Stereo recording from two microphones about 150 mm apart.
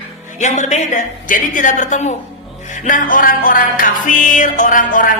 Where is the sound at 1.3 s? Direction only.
60° left (ahead or behind).